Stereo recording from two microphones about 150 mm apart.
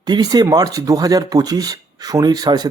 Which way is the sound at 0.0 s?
25° right (ahead or behind).